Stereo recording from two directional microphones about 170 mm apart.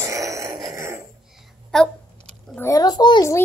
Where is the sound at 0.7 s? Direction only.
15° right (ahead or behind).